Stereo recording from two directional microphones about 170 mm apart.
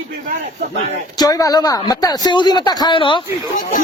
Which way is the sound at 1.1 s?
20° left (ahead or behind).